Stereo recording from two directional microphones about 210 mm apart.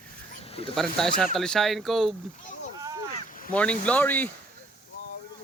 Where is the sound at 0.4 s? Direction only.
30° left (ahead or behind).